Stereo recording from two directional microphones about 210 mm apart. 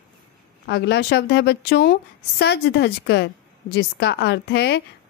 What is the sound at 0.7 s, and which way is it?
A woman's voice, 50° left (ahead or behind).